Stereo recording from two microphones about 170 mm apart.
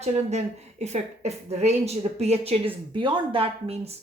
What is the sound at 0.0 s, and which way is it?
A woman's voice, 40° right (ahead or behind).